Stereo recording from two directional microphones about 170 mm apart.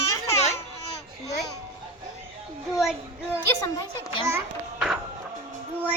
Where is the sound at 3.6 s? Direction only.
25° left (ahead or behind).